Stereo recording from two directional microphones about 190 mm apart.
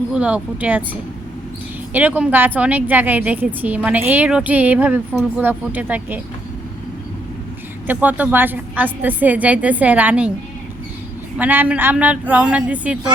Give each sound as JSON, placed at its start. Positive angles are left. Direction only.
{"t": 0.1, "sound": "a woman's voice", "side_deg": -5}
{"t": 1.9, "sound": "a woman's voice", "side_deg": -10}
{"t": 7.9, "sound": "a woman's voice", "side_deg": -10}
{"t": 11.3, "sound": "a woman's voice", "side_deg": -10}